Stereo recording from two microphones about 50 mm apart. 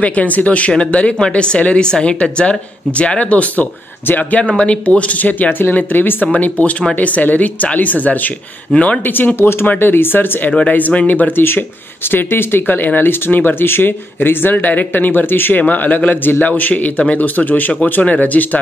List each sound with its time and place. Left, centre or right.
0.0 s speech: left
6.2 s speech: left
9.4 s speech: left
12.1 s speech: left